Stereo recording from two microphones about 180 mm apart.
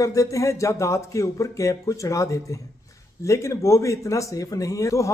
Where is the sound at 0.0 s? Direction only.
20° left (ahead or behind).